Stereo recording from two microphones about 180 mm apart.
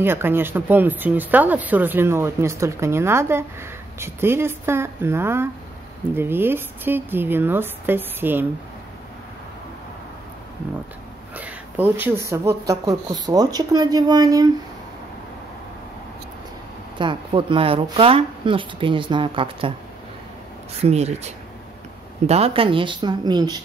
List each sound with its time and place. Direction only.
0.0 s speech: 10° right (ahead or behind)
11.3 s speech: 10° right (ahead or behind)
17.0 s speech: 25° right (ahead or behind)
20.8 s speech: 35° right (ahead or behind)